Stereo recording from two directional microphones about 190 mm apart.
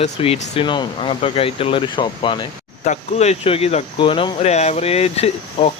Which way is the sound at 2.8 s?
35° left (ahead or behind).